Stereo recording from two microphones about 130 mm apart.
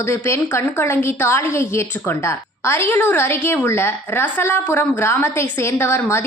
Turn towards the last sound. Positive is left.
turn(degrees=20)  # may be behind; listen again after turning